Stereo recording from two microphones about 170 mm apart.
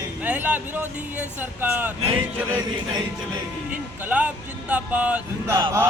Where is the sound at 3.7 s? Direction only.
10° right (ahead or behind).